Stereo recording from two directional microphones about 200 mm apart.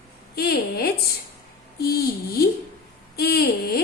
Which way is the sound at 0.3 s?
50° left (ahead or behind).